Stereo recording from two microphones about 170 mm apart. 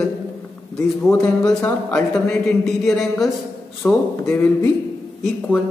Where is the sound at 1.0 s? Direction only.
5° left (ahead or behind).